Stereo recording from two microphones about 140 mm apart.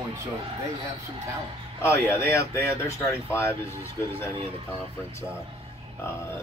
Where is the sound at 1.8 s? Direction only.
15° left (ahead or behind).